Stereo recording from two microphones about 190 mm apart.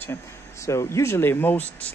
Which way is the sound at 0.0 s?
15° left (ahead or behind).